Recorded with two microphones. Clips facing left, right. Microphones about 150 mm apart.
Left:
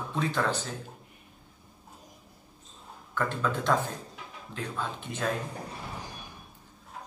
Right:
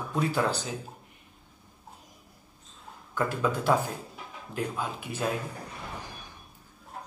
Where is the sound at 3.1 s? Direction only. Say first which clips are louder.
Right 2 dB; 10° right (ahead or behind).